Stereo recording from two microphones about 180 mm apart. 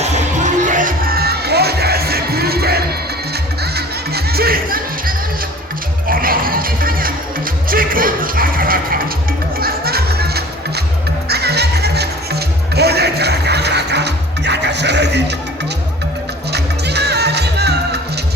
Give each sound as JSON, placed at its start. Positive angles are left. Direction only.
{"t": 0.0, "sound": "music", "side_deg": -40}
{"t": 16.5, "sound": "music", "side_deg": -65}